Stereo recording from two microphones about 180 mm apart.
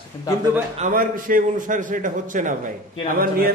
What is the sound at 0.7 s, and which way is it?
A man's voice, 45° right (ahead or behind).